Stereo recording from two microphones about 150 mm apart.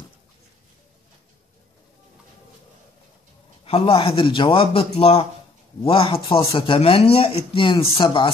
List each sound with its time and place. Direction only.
3.6 s speech: 40° left (ahead or behind)